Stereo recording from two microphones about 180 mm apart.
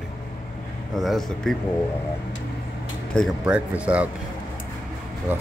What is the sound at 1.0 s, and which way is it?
Speech, centre (ahead or behind).